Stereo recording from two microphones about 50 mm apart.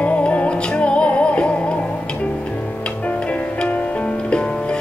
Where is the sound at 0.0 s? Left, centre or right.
Left.